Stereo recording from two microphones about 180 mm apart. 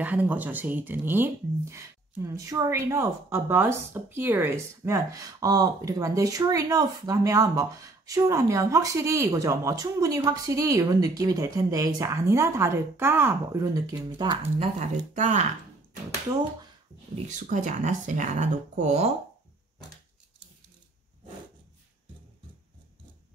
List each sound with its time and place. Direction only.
0.0 s speech: 10° right (ahead or behind); by 15.4 s 45° right (ahead or behind)
17.3 s speech: 45° right (ahead or behind)